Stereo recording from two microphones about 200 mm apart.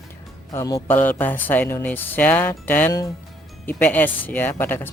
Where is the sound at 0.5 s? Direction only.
15° left (ahead or behind).